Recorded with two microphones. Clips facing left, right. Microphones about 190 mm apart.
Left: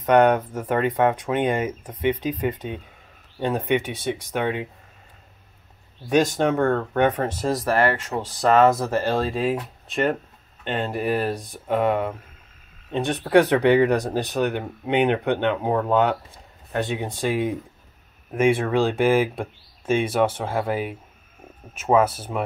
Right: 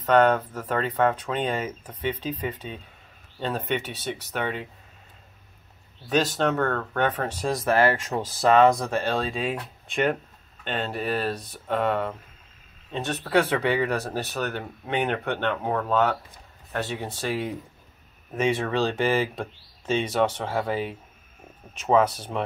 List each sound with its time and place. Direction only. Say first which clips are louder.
0.0 s speech: left 3 dB; 15° left (ahead or behind)
6.0 s speech: left 4 dB; 15° left (ahead or behind)
6.7 s speech: left 6 dB; 25° left (ahead or behind)
7.1 s speech: left 5 dB; 10° left (ahead or behind)
7.5 s speech: right 1 dB; 5° right (ahead or behind)